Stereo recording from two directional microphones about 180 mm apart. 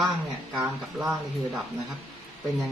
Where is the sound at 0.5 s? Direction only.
5° right (ahead or behind).